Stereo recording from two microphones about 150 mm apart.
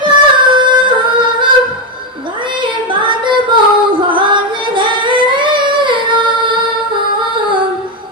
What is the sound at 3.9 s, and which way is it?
Singing, 35° right (ahead or behind).